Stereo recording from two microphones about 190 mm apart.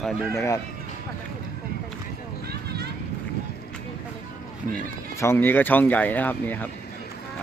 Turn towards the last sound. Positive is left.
turn(degrees=10)  # may be behind; listen again after turning